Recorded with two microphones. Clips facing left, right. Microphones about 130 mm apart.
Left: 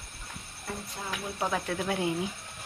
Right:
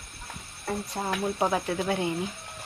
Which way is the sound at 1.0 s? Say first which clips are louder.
Right 9 dB; 45° right (ahead or behind).